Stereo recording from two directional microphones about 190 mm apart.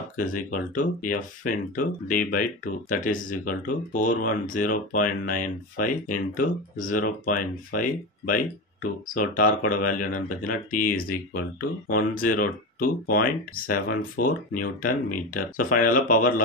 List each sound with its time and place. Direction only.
0.2 s speech: 45° left (ahead or behind)